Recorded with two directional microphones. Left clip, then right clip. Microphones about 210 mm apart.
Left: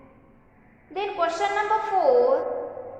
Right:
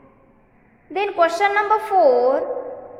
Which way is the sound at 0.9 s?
50° right (ahead or behind).